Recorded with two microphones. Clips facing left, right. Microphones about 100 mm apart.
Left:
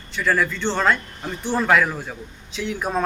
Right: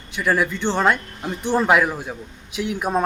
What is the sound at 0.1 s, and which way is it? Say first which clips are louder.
Speech: right 1 dB; 15° right (ahead or behind).